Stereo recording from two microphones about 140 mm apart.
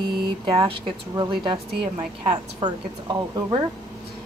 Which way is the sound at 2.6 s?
30° right (ahead or behind).